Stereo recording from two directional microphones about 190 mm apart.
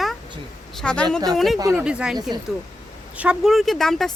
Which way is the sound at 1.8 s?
5° right (ahead or behind).